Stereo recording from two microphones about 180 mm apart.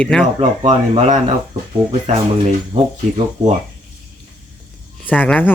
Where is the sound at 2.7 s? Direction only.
30° right (ahead or behind).